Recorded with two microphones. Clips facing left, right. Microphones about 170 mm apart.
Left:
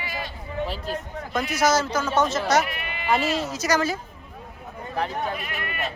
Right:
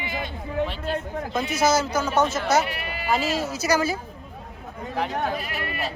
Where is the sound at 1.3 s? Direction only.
25° right (ahead or behind).